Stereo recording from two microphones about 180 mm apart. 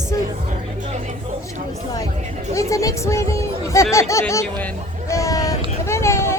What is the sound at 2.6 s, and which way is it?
Speech, 15° left (ahead or behind).